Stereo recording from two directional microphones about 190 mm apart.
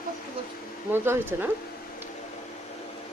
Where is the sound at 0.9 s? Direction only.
10° right (ahead or behind).